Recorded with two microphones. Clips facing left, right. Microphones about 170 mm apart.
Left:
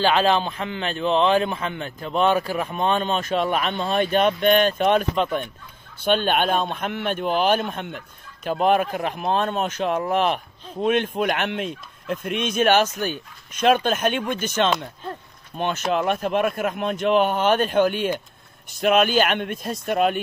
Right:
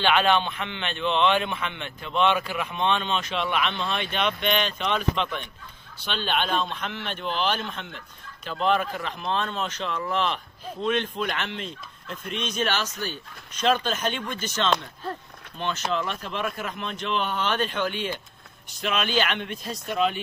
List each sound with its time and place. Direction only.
0.0 s a man's voice: 35° left (ahead or behind); by 20.2 s 55° left (ahead or behind)